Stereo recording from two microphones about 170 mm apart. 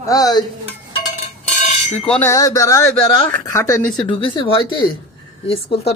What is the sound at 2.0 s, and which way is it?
Speech, 10° left (ahead or behind).